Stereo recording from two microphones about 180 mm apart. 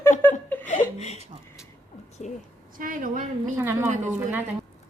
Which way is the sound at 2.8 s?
50° right (ahead or behind).